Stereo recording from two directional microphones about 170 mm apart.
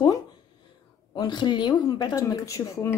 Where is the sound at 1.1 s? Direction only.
25° left (ahead or behind).